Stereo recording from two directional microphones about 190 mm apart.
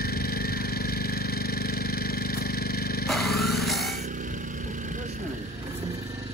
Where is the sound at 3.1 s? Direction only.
Centre (ahead or behind).